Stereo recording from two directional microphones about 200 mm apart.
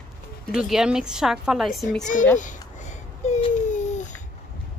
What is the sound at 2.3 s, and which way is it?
Babbling, 40° left (ahead or behind).